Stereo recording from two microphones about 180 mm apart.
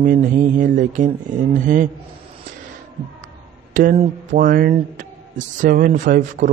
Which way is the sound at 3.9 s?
35° right (ahead or behind).